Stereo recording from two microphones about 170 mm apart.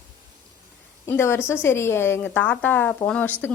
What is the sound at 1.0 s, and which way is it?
A woman's voice, 15° left (ahead or behind).